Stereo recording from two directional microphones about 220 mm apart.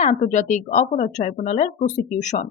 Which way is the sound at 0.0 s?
25° left (ahead or behind).